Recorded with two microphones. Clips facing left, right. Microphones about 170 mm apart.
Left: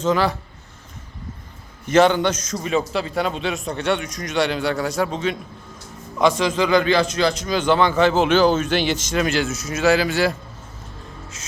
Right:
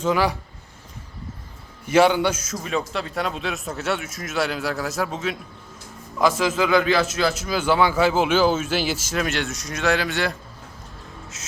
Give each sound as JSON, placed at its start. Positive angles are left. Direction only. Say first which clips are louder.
{"t": 0.0, "sound": "speech", "louder": "left 2 dB", "side_deg": -10}
{"t": 1.9, "sound": "a man's voice", "louder": "left 1 dB", "side_deg": -10}
{"t": 11.3, "sound": "a man's voice", "louder": "left 1 dB", "side_deg": 0}